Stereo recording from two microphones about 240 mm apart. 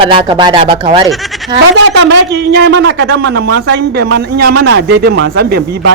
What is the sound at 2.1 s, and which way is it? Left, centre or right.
A man's voice, right.